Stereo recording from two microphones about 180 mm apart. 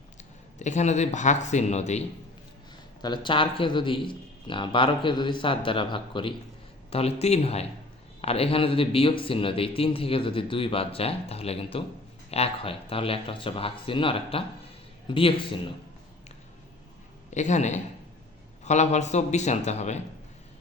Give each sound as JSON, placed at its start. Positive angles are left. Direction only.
{"t": 0.6, "sound": "speech", "side_deg": 40}
{"t": 3.0, "sound": "a man's voice", "side_deg": 25}
{"t": 17.3, "sound": "speech", "side_deg": 40}